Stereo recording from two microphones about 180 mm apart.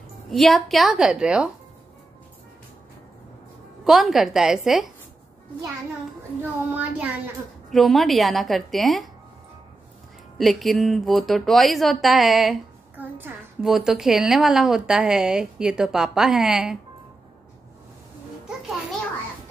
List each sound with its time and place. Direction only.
0.3 s a woman's voice: centre (ahead or behind)
3.8 s a woman's voice: centre (ahead or behind)
6.7 s a child's voice: 10° right (ahead or behind)
10.3 s a woman's voice: centre (ahead or behind)